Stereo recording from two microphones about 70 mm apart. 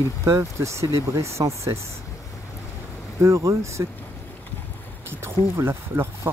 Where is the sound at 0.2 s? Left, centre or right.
Right.